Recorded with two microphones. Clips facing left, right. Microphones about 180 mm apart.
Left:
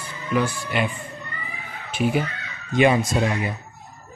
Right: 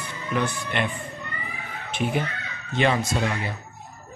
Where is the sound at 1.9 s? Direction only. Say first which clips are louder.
Left 4 dB; 5° left (ahead or behind).